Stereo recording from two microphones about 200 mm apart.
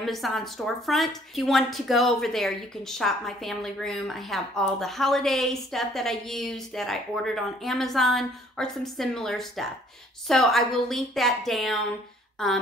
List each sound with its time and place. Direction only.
0.0 s a woman's voice: centre (ahead or behind)